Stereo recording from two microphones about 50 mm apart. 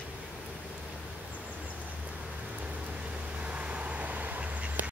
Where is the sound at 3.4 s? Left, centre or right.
Right.